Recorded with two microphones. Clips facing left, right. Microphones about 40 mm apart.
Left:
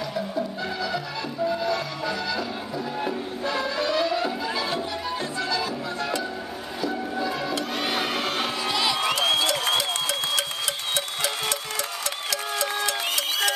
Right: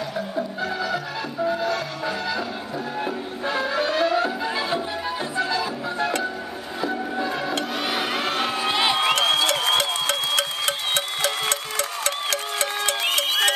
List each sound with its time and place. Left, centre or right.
0.4 s music: centre
3.4 s music: right
6.8 s train: right
7.8 s a sound: centre
8.6 s crowd: right
9.4 s music: right
12.0 s a sound: right